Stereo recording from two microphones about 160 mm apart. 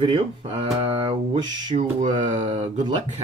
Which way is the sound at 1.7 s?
50° right (ahead or behind).